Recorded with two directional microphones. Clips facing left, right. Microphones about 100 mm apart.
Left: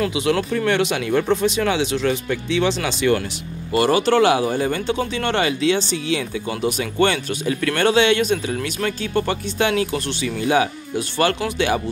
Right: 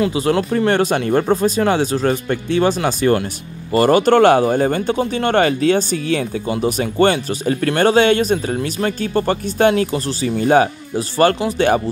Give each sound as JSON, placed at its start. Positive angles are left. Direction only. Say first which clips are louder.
{"t": 0.1, "sound": "speech", "louder": "right 3 dB", "side_deg": -40}
{"t": 6.4, "sound": "speech", "louder": "right 4 dB", "side_deg": -35}